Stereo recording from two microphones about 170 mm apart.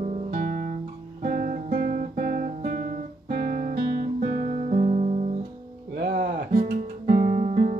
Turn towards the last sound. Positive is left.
turn(degrees=-50)  # may be behind; listen again after turning